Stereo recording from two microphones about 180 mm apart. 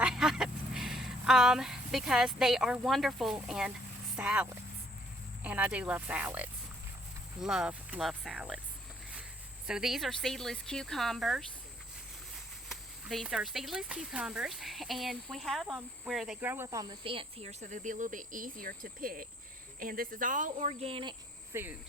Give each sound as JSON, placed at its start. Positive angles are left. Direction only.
{"t": 0.0, "sound": "speech", "side_deg": -5}
{"t": 9.6, "sound": "speech", "side_deg": -5}
{"t": 12.6, "sound": "speech", "side_deg": 0}
{"t": 21.5, "sound": "cricket", "side_deg": -10}